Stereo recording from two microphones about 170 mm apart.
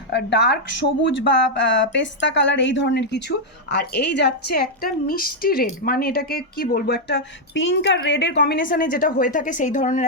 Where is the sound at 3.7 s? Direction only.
80° left; by 10.0 s 45° left (ahead or behind).